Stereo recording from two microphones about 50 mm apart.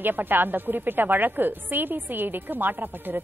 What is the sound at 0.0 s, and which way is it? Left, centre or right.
A woman's voice, right.